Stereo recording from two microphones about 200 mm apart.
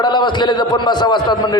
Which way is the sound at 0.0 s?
20° left (ahead or behind).